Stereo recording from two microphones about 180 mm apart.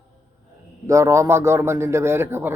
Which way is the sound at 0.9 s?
15° right (ahead or behind).